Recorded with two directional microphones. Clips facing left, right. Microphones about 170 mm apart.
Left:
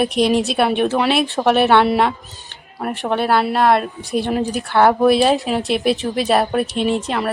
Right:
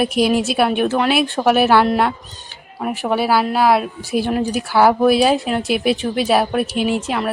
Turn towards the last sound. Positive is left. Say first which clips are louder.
# even
turn(degrees=0)  # may be behind; listen again after turning